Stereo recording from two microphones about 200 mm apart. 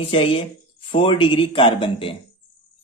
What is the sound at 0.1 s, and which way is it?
Speech, 30° left (ahead or behind).